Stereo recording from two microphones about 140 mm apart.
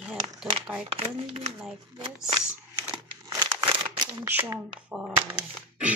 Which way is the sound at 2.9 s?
30° right (ahead or behind).